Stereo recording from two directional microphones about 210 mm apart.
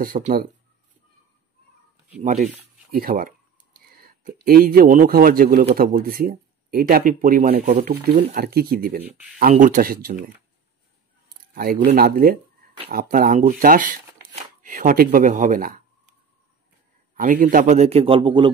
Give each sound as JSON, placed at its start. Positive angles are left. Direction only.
{"t": 0.0, "sound": "speech", "side_deg": -40}
{"t": 2.4, "sound": "speech", "side_deg": -45}
{"t": 9.0, "sound": "speech", "side_deg": -5}
{"t": 9.4, "sound": "speech", "side_deg": -40}
{"t": 11.5, "sound": "speech", "side_deg": -45}
{"t": 17.1, "sound": "speech", "side_deg": -40}